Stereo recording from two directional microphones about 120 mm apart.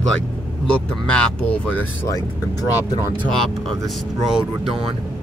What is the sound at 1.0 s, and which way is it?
Speech, 10° left (ahead or behind).